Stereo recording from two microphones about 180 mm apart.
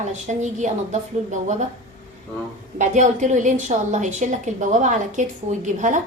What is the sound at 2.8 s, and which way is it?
A woman's voice, 40° right (ahead or behind).